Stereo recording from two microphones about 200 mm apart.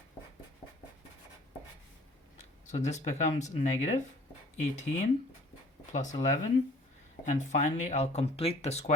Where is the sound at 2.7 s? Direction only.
35° left (ahead or behind).